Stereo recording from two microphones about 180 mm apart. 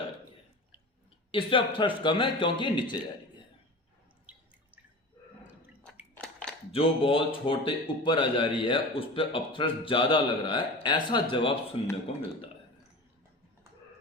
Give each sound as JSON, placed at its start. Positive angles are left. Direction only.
{"t": 1.3, "sound": "a man's voice", "side_deg": 30}
{"t": 6.1, "sound": "a sound", "side_deg": 0}
{"t": 6.7, "sound": "a man's voice", "side_deg": 30}